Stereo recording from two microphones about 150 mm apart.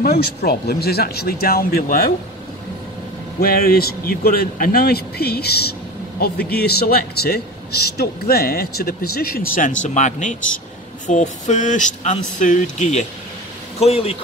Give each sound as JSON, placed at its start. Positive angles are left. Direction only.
{"t": 0.0, "sound": "a man's voice", "side_deg": 90}
{"t": 3.3, "sound": "a man's voice", "side_deg": 80}